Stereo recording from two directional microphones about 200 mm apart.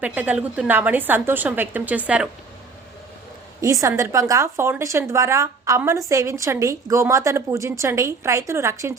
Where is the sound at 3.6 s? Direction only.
15° right (ahead or behind).